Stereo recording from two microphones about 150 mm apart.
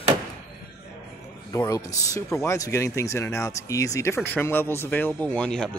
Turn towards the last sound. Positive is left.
turn(degrees=5)  # may be behind; listen again after turning